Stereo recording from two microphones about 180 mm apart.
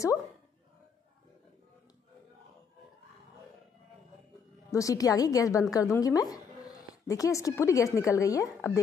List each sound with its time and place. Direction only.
4.6 s a woman's voice: 20° left (ahead or behind)